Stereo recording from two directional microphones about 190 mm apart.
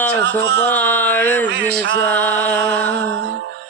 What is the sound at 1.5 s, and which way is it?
Speech, 60° right (ahead or behind).